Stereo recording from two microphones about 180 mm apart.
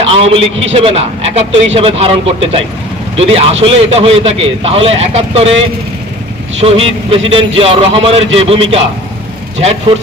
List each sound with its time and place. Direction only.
0.0 s a man's voice: 30° right (ahead or behind)
6.6 s a man's voice: 35° right (ahead or behind)